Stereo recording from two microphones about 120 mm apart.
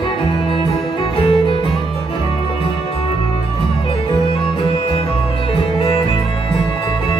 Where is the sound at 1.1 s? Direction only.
50° left (ahead or behind).